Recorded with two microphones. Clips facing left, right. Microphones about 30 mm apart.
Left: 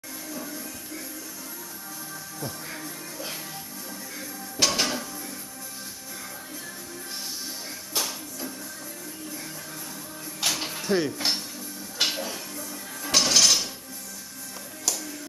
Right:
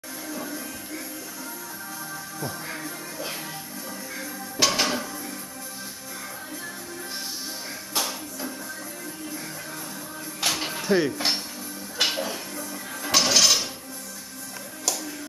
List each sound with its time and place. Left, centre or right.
0.4 s music: centre
2.4 s music: centre
7.9 s music: centre
10.4 s music: centre
11.1 s speech: centre
12.0 s dishes: centre